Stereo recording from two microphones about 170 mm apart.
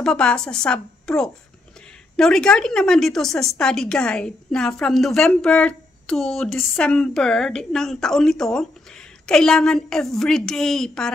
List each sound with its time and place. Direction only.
0.0 s a woman's voice: 5° left (ahead or behind)